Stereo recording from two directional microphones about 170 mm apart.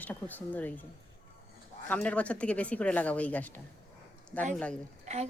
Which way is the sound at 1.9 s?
10° left (ahead or behind).